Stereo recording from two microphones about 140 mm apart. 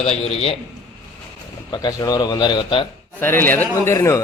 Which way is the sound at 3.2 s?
15° left (ahead or behind).